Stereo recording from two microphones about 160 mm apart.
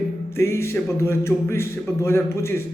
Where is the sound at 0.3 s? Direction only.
15° left (ahead or behind).